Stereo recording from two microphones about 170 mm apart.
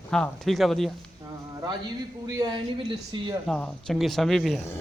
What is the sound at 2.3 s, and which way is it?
Speech, 25° right (ahead or behind).